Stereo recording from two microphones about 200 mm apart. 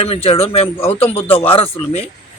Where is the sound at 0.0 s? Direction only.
30° left (ahead or behind).